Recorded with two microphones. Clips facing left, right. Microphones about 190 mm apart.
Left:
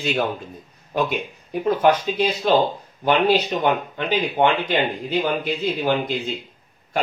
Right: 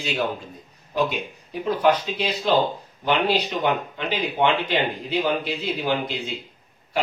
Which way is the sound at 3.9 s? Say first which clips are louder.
Left 3 dB; 50° left (ahead or behind).